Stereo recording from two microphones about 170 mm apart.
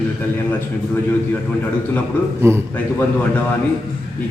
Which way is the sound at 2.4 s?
15° right (ahead or behind).